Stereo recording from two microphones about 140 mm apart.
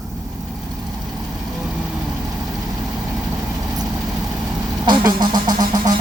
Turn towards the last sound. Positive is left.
turn(degrees=-30)  # may be behind; listen again after turning